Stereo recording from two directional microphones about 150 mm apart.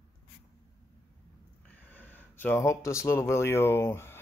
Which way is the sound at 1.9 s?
10° left (ahead or behind).